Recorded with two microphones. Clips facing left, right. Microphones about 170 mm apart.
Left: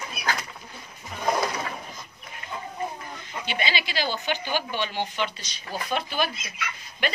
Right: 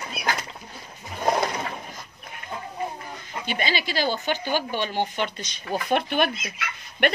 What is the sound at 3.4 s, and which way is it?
A woman's voice, 45° right (ahead or behind).